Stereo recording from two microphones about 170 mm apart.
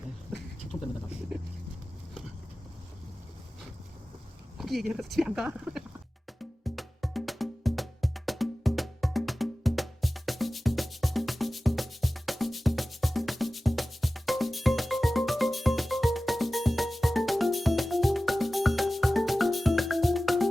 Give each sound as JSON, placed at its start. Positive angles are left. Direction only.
{"t": 0.7, "sound": "dog", "side_deg": 20}
{"t": 4.5, "sound": "speech", "side_deg": 0}
{"t": 6.4, "sound": "music", "side_deg": 0}